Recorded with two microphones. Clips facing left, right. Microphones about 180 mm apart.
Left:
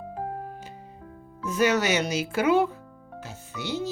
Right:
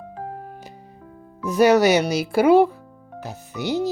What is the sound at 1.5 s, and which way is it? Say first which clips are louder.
Speech: right 8 dB; 35° right (ahead or behind).